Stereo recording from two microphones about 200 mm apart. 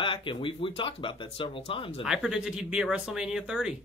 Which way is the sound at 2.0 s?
5° right (ahead or behind).